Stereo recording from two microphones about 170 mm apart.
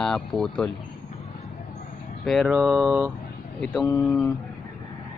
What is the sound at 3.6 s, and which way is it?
Speech, 5° left (ahead or behind).